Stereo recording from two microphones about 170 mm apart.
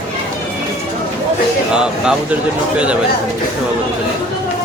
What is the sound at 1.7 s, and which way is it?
Speech, 5° right (ahead or behind).